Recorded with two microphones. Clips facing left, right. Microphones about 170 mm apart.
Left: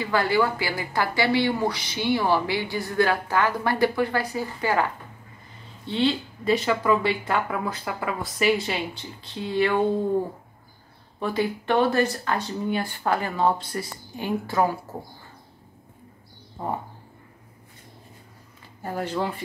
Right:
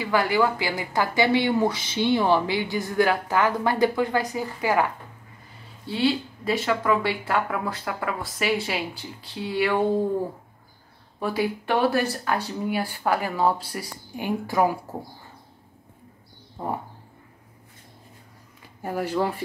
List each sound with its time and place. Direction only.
0.0 s a woman's voice: 15° right (ahead or behind)
5.9 s speech: 5° right (ahead or behind)
11.1 s a woman's voice: 5° right (ahead or behind)
18.8 s a woman's voice: 10° right (ahead or behind)